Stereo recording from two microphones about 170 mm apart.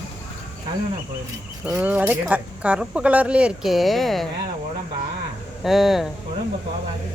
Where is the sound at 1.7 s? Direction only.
5° right (ahead or behind).